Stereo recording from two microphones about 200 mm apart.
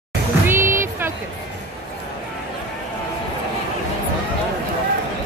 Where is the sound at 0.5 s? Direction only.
10° right (ahead or behind).